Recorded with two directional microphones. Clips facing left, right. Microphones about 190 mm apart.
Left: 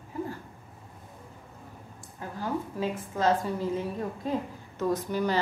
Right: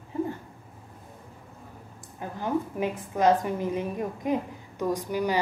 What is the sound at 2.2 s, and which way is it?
A woman's voice, 20° right (ahead or behind).